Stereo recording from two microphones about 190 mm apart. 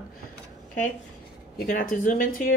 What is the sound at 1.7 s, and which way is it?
Speech, 45° left (ahead or behind).